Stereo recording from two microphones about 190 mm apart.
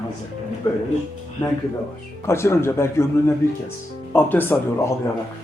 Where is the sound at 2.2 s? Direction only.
15° left (ahead or behind).